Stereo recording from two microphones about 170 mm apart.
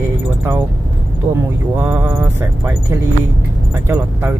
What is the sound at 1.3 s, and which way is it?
Speech, 10° right (ahead or behind).